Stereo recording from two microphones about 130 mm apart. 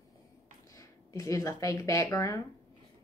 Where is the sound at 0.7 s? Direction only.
25° left (ahead or behind).